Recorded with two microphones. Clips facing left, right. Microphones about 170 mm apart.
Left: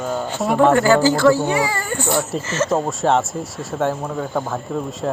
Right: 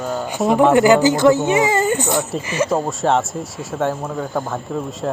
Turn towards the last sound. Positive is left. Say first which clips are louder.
# even
turn(degrees=0)  # may be behind; listen again after turning